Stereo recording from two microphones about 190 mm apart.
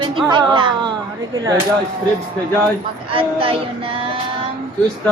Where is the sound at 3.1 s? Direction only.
30° right (ahead or behind).